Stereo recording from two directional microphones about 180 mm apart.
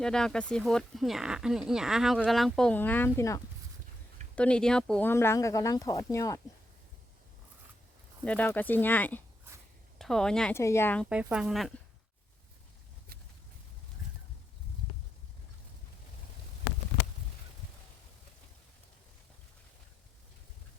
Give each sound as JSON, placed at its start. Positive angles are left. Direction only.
{"t": 0.0, "sound": "speech", "side_deg": 5}
{"t": 4.4, "sound": "speech", "side_deg": 5}
{"t": 8.2, "sound": "speech", "side_deg": 5}
{"t": 10.5, "sound": "speech", "side_deg": 15}
{"t": 11.1, "sound": "speech", "side_deg": -5}
{"t": 13.1, "sound": "a sound", "side_deg": -55}